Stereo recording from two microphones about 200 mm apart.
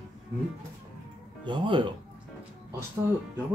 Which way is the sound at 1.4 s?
25° right (ahead or behind).